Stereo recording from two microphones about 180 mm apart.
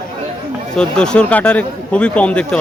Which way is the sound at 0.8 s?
5° left (ahead or behind).